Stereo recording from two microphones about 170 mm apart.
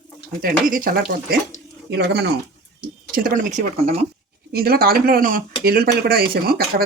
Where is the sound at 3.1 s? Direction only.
55° right (ahead or behind).